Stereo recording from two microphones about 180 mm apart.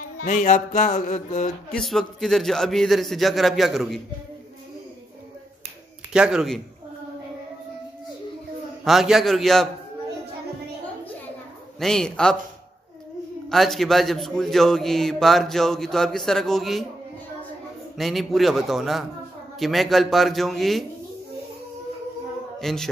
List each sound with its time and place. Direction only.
0.3 s music: 45° left (ahead or behind)
1.8 s a man's voice: centre (ahead or behind)
6.1 s a man's voice: 5° right (ahead or behind)
8.8 s a man's voice: centre (ahead or behind)
11.8 s a man's voice: 5° left (ahead or behind)
13.5 s a man's voice: centre (ahead or behind)
17.9 s a man's voice: centre (ahead or behind)
22.6 s a sound: centre (ahead or behind)